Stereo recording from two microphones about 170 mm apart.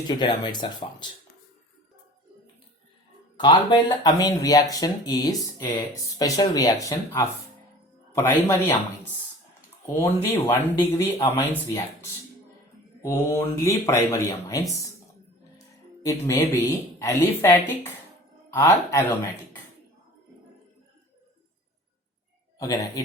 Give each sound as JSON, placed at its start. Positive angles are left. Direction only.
{"t": 0.1, "sound": "speech", "side_deg": 25}
{"t": 3.3, "sound": "speech", "side_deg": 25}
{"t": 9.8, "sound": "speech", "side_deg": 15}
{"t": 13.0, "sound": "speech", "side_deg": 15}
{"t": 16.0, "sound": "speech", "side_deg": 15}
{"t": 22.5, "sound": "speech", "side_deg": 20}